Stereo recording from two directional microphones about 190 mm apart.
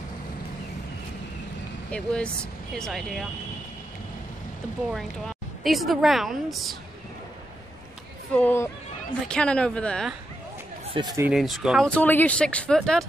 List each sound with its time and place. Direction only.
1.9 s speech: 5° left (ahead or behind)
4.9 s speech: centre (ahead or behind)
8.3 s speech: 10° left (ahead or behind)
10.9 s speech: 20° right (ahead or behind)
11.2 s speech: centre (ahead or behind)